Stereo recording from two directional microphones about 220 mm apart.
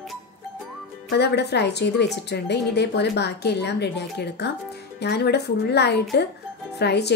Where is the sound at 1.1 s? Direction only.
50° left (ahead or behind).